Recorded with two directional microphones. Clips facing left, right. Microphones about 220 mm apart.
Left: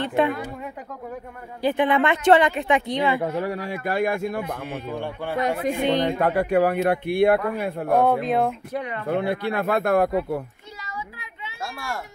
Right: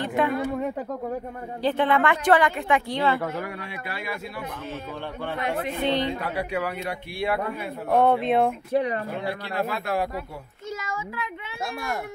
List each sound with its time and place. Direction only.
0.0 s speech: 25° left (ahead or behind)
1.6 s speech: 15° left (ahead or behind)
3.3 s speech: 35° left (ahead or behind)
4.9 s speech: 10° left (ahead or behind)
5.4 s speech: 40° left (ahead or behind)
5.7 s speech: 15° left (ahead or behind)
6.1 s speech: 50° left (ahead or behind)
7.9 s speech: centre (ahead or behind)
8.7 s speech: 35° right (ahead or behind)
9.0 s speech: 55° left (ahead or behind)